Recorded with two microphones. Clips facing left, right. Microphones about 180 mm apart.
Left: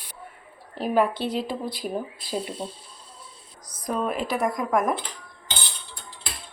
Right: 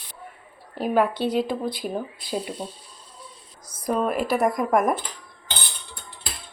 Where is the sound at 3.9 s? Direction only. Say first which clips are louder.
Right 3 dB; 5° right (ahead or behind).